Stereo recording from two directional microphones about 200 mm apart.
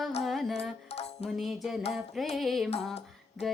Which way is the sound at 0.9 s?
30° left (ahead or behind).